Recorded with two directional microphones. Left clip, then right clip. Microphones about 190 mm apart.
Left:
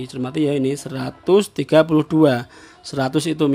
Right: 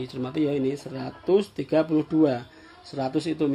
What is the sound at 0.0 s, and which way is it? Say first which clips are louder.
Speech: left 5 dB; 30° left (ahead or behind).